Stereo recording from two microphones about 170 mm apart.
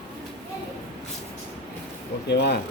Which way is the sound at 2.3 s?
75° left (ahead or behind).